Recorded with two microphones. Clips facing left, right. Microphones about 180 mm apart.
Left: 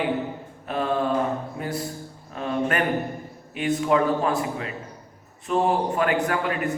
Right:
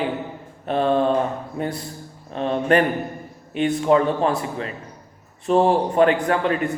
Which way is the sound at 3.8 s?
30° right (ahead or behind).